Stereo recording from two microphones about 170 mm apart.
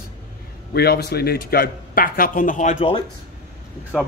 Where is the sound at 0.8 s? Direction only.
70° left (ahead or behind); by 2.9 s 45° left (ahead or behind).